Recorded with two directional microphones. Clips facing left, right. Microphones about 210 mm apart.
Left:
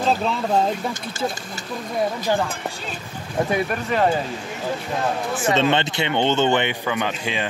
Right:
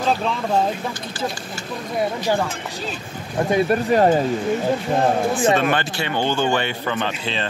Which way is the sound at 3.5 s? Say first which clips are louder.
Right 8 dB; 35° right (ahead or behind).